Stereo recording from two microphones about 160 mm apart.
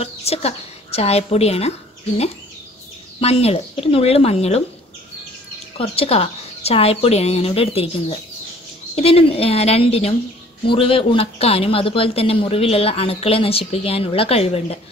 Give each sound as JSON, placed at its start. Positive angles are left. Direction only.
{"t": 0.0, "sound": "a woman's voice", "side_deg": 40}
{"t": 3.2, "sound": "speech", "side_deg": 40}
{"t": 5.8, "sound": "speech", "side_deg": 40}